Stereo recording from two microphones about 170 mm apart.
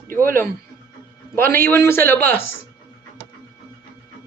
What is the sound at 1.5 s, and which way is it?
Speech, 15° left (ahead or behind).